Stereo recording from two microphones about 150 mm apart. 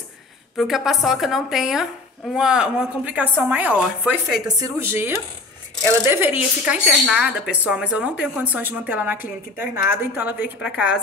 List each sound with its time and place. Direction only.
0.6 s a woman's voice: centre (ahead or behind)
4.6 s a woman's voice: 20° right (ahead or behind)